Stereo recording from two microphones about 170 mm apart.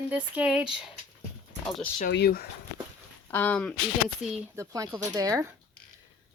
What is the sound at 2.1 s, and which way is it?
Speech, 70° left (ahead or behind).